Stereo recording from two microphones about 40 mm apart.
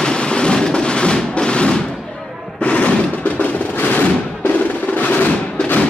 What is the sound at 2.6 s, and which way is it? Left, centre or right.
Music, left.